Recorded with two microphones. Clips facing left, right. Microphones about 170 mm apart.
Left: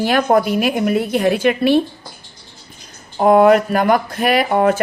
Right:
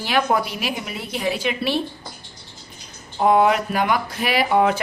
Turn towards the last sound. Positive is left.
turn(degrees=50)  # may be behind; listen again after turning